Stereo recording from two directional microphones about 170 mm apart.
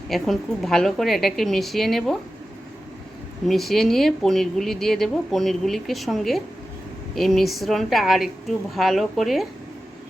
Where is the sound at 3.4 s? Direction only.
Centre (ahead or behind).